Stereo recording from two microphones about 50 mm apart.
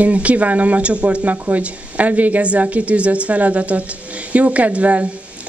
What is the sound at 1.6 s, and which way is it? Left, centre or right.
A woman's voice, right.